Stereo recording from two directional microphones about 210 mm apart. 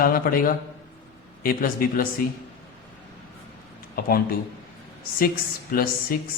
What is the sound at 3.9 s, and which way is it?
Speech, 45° left (ahead or behind).